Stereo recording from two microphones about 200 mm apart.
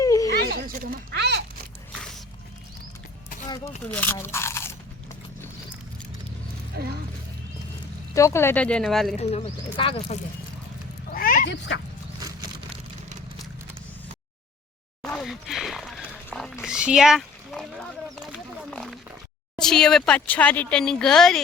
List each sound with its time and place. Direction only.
0.0 s a sound: 15° left (ahead or behind)
0.5 s a sound: 50° right (ahead or behind)
2.0 s music: centre (ahead or behind)
3.8 s speech: 10° left (ahead or behind)
8.1 s speech: 15° left (ahead or behind)
9.2 s speech: 30° left (ahead or behind)
11.1 s wild animals: 45° left (ahead or behind)
15.0 s a sound: centre (ahead or behind)
19.5 s speech: 5° left (ahead or behind)